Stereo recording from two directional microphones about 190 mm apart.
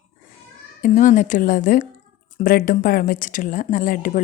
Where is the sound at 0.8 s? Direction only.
40° left (ahead or behind).